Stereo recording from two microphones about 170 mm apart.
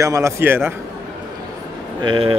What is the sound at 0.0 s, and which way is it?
Speech, 15° right (ahead or behind).